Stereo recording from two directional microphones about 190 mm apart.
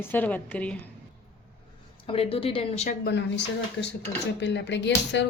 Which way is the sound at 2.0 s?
30° left (ahead or behind).